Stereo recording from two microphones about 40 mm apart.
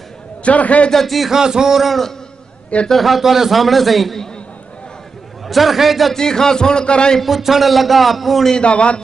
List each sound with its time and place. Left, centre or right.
0.4 s a man's voice: left
0.9 s a man's voice: centre
1.3 s a sound: centre
2.9 s a man's voice: centre
5.5 s a man's voice: centre
6.1 s a man's voice: centre
7.2 s a man's voice: centre
8.6 s a man's voice: left